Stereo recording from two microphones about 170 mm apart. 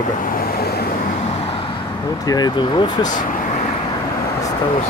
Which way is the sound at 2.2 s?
25° left (ahead or behind).